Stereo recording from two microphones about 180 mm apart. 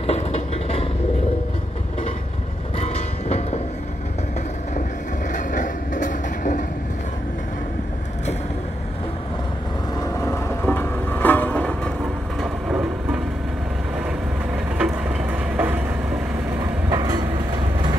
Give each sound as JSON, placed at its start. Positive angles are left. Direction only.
{"t": 0.0, "sound": "vehicle", "side_deg": 35}
{"t": 2.8, "sound": "vehicle", "side_deg": 35}
{"t": 5.3, "sound": "vehicle", "side_deg": 45}
{"t": 9.9, "sound": "vehicle", "side_deg": 15}
{"t": 12.4, "sound": "vehicle", "side_deg": -5}
{"t": 14.8, "sound": "a sound", "side_deg": -10}
{"t": 16.9, "sound": "train", "side_deg": -20}